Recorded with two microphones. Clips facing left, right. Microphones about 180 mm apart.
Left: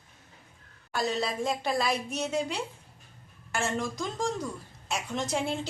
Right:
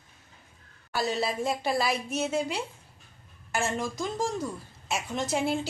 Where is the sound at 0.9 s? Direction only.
5° right (ahead or behind).